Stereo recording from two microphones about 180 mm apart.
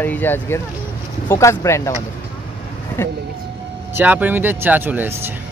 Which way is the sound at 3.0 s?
15° left (ahead or behind).